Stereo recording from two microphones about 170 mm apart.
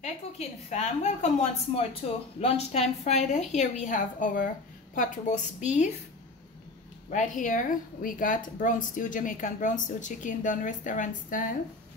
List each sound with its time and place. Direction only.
0.0 s a woman's voice: 45° left (ahead or behind)
7.1 s a woman's voice: 50° left (ahead or behind)